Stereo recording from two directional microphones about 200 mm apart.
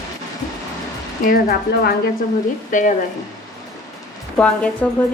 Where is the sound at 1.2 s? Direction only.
50° left (ahead or behind).